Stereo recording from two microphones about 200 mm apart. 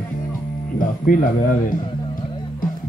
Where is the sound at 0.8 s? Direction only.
45° left (ahead or behind).